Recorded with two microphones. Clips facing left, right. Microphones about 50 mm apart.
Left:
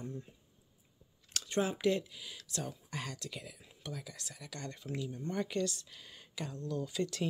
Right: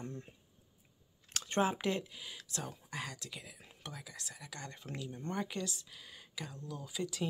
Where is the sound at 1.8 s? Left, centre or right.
Right.